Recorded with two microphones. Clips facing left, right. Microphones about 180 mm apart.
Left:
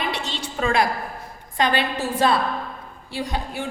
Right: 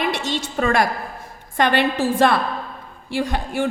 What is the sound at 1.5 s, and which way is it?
A woman's voice, 60° right (ahead or behind).